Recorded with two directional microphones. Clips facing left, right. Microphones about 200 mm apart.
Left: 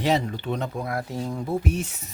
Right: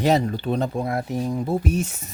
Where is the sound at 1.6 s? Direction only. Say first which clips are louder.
Right 3 dB; 45° right (ahead or behind).